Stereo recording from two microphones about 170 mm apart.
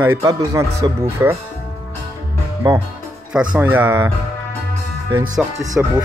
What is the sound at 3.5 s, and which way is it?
Speech, 10° right (ahead or behind).